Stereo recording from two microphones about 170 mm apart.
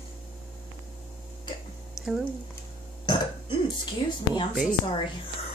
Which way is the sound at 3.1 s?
30° left (ahead or behind).